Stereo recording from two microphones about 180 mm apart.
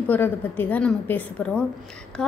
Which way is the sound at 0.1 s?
10° left (ahead or behind).